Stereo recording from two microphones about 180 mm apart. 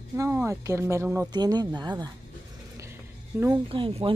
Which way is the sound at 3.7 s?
30° right (ahead or behind).